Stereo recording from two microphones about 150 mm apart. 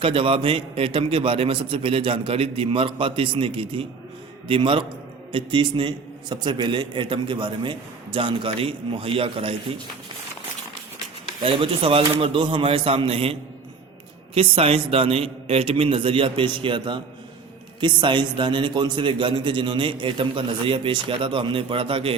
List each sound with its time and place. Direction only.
0.0 s a man's voice: 35° right (ahead or behind)
11.4 s a man's voice: 35° right (ahead or behind)
14.3 s a man's voice: 40° right (ahead or behind)